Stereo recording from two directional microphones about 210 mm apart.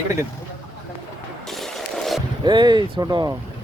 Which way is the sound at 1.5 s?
Centre (ahead or behind).